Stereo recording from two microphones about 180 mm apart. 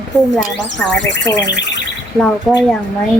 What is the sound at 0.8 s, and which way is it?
Speech, 10° left (ahead or behind).